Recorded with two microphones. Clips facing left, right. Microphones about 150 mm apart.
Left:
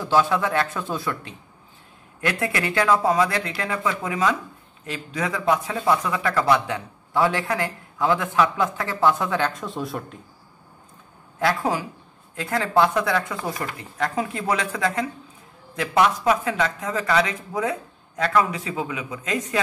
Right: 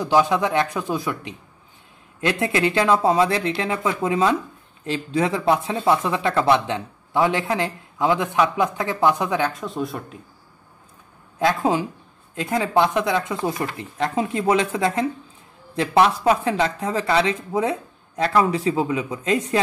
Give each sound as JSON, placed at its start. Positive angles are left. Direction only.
{"t": 0.0, "sound": "speech", "side_deg": -15}
{"t": 9.5, "sound": "speech", "side_deg": 0}
{"t": 11.3, "sound": "speech", "side_deg": -20}